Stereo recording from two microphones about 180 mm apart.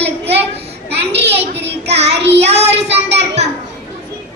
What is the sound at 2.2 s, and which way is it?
Child singing, 35° right (ahead or behind).